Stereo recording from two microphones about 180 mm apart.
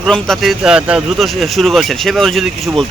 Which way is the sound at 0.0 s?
Centre (ahead or behind).